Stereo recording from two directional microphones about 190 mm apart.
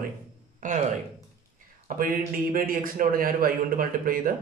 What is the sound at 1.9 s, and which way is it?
Speech, 45° right (ahead or behind).